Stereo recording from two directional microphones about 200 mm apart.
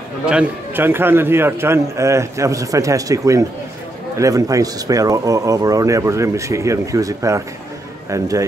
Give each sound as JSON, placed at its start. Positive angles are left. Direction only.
{"t": 0.2, "sound": "a man's voice", "side_deg": -5}